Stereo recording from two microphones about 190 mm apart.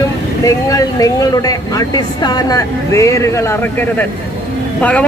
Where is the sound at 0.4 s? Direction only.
20° left (ahead or behind).